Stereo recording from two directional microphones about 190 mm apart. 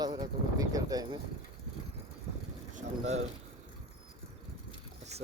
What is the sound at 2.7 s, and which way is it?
Speech, 35° right (ahead or behind).